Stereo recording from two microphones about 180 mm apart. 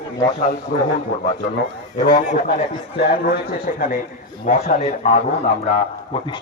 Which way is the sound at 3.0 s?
60° left (ahead or behind).